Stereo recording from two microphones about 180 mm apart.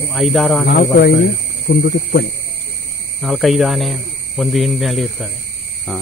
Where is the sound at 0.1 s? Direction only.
Centre (ahead or behind).